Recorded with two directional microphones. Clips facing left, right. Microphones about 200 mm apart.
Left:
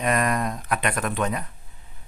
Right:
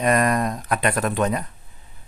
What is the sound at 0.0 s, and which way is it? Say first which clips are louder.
A man's voice: right 4 dB; 40° right (ahead or behind).